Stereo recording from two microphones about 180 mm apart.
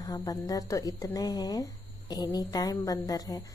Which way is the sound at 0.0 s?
20° left (ahead or behind).